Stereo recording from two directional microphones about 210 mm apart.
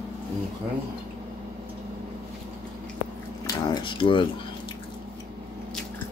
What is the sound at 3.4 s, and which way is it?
Speech, 20° left (ahead or behind).